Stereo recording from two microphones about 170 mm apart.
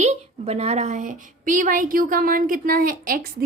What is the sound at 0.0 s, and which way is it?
A woman's voice, 40° right (ahead or behind).